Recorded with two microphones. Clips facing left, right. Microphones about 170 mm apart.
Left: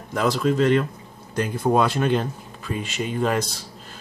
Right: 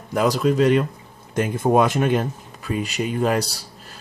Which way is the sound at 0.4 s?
5° right (ahead or behind).